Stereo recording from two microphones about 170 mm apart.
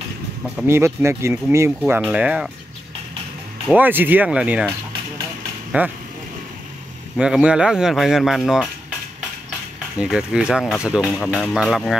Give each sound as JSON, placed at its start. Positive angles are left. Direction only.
{"t": 0.7, "sound": "speech", "side_deg": -15}
{"t": 3.7, "sound": "speech", "side_deg": -10}
{"t": 5.7, "sound": "speech", "side_deg": -10}
{"t": 7.2, "sound": "speech", "side_deg": -5}
{"t": 9.9, "sound": "speech", "side_deg": -5}